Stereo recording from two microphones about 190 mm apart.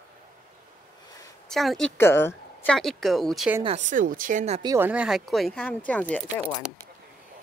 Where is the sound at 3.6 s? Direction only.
40° right (ahead or behind).